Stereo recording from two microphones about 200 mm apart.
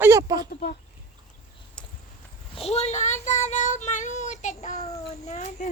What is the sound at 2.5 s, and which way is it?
Child singing, 30° left (ahead or behind).